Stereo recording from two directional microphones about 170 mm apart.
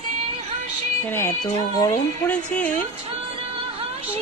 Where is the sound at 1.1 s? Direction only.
15° left (ahead or behind).